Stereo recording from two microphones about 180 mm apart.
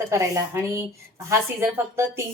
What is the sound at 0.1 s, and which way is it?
A woman's voice, 15° right (ahead or behind).